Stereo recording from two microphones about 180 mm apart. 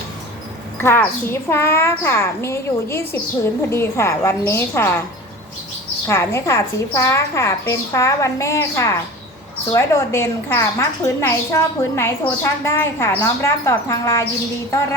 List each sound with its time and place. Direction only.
0.8 s a woman's voice: 15° left (ahead or behind)
6.1 s a woman's voice: 15° left (ahead or behind)